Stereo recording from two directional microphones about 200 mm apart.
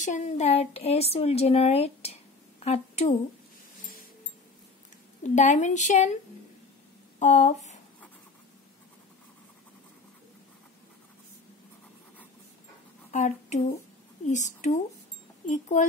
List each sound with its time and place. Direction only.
0.0 s a woman's voice: 35° left (ahead or behind)
5.2 s speech: 40° left (ahead or behind)
7.2 s speech: 35° left (ahead or behind)
13.1 s a sound: 35° left (ahead or behind)
14.3 s speech: 35° left (ahead or behind)